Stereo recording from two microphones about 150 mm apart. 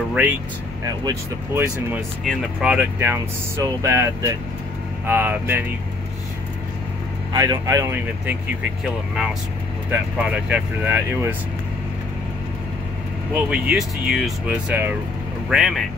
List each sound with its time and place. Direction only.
0.1 s speech: 10° right (ahead or behind)
2.2 s speech: 5° right (ahead or behind)
7.3 s speech: 25° right (ahead or behind)
8.8 s speech: centre (ahead or behind)
13.3 s speech: 10° right (ahead or behind)